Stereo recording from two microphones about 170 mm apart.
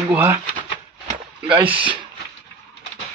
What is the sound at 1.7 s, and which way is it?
Speech, 30° right (ahead or behind).